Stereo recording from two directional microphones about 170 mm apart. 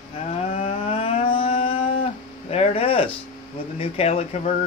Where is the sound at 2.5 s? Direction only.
35° left (ahead or behind).